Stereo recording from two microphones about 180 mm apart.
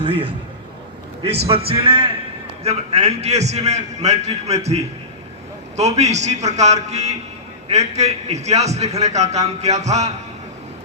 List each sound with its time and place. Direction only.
0.0 s a man's voice: 30° right (ahead or behind)
1.5 s a man's voice: 30° right (ahead or behind)